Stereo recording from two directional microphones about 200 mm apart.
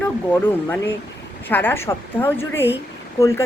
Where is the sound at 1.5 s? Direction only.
10° left (ahead or behind).